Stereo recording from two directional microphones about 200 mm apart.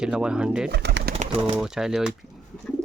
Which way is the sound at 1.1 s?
30° right (ahead or behind).